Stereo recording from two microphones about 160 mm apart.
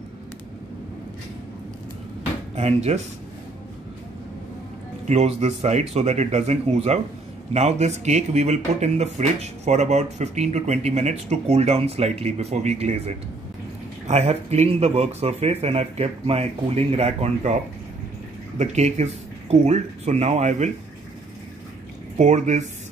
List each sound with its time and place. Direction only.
2.5 s speech: 40° right (ahead or behind)
5.0 s speech: 45° right (ahead or behind)
18.6 s speech: 45° right (ahead or behind)
22.1 s speech: 45° right (ahead or behind)